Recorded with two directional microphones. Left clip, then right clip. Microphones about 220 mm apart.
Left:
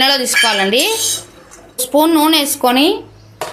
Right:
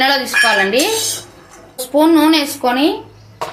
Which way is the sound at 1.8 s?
25° left (ahead or behind).